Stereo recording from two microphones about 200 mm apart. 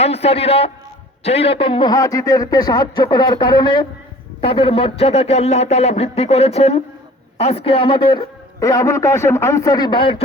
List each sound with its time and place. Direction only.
0.0 s a man's voice: 30° left (ahead or behind)